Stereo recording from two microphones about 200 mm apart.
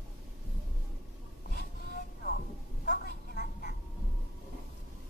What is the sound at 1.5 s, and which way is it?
Music, 50° left (ahead or behind).